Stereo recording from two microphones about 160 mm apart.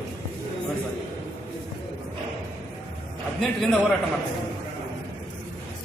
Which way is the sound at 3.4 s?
5° left (ahead or behind).